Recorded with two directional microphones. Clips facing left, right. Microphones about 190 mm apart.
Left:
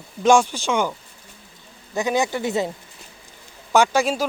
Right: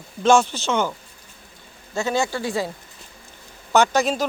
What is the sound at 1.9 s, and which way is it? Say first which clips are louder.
Speech: left 1 dB; 15° left (ahead or behind).